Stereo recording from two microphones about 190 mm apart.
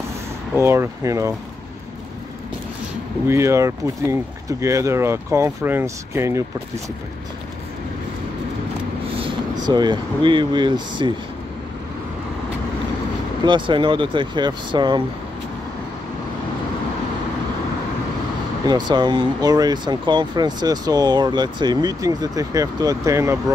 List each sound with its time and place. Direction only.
0.6 s speech: 15° right (ahead or behind)
3.3 s speech: 15° right (ahead or behind)
9.2 s speech: 20° right (ahead or behind)
13.5 s speech: 25° right (ahead or behind)
18.7 s speech: 25° right (ahead or behind)